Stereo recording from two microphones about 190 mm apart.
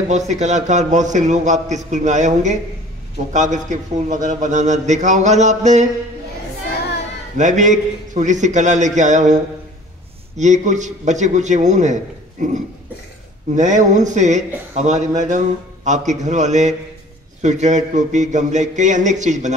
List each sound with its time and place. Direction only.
0.1 s a man's voice: 40° right (ahead or behind)
7.3 s a man's voice: 40° right (ahead or behind)
13.6 s a man's voice: 40° right (ahead or behind)